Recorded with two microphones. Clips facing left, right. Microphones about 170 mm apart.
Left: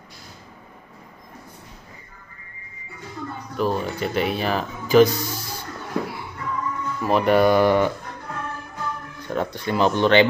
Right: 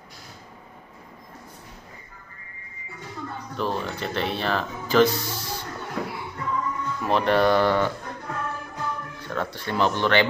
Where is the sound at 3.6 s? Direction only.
10° left (ahead or behind).